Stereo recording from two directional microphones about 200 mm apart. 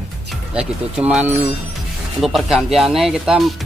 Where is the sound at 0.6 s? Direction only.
5° right (ahead or behind).